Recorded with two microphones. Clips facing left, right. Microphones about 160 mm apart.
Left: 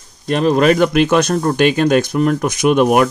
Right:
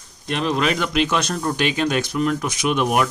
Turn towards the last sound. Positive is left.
turn(degrees=50)  # may be behind; listen again after turning